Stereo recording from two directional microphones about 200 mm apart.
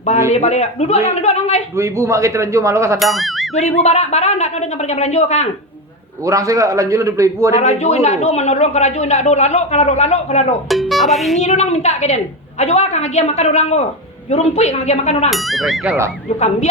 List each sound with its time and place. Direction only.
0.3 s a man's voice: 35° left (ahead or behind)
1.7 s a man's voice: 15° right (ahead or behind)
3.0 s speech: centre (ahead or behind)
3.5 s a man's voice: 35° left (ahead or behind)
6.2 s a man's voice: 15° right (ahead or behind)
7.5 s a man's voice: 35° left (ahead or behind)
10.7 s speech: centre (ahead or behind)
11.3 s a man's voice: 35° left (ahead or behind)
15.3 s speech: centre (ahead or behind)